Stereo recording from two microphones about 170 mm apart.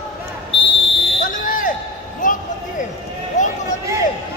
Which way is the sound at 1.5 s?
50° left (ahead or behind).